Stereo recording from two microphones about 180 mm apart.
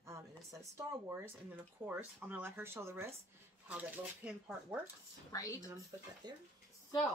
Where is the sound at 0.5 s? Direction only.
15° right (ahead or behind).